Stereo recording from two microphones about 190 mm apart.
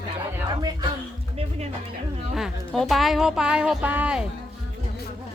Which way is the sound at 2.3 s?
Centre (ahead or behind).